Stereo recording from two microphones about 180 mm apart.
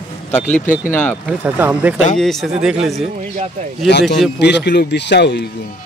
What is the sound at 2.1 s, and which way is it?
Speech, centre (ahead or behind).